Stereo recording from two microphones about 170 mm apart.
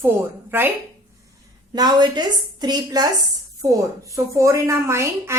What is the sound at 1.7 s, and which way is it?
A woman's voice, 25° right (ahead or behind).